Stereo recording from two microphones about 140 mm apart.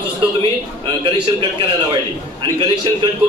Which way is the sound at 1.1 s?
40° right (ahead or behind).